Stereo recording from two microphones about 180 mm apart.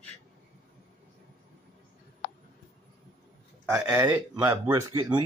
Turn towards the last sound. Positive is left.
turn(degrees=-15)  # may be behind; listen again after turning